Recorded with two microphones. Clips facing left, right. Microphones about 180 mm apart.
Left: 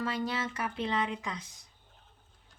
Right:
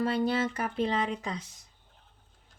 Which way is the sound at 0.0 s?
30° right (ahead or behind).